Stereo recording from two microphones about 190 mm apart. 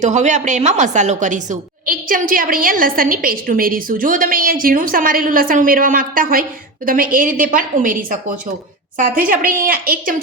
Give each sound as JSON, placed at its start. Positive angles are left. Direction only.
{"t": 0.0, "sound": "a woman's voice", "side_deg": -40}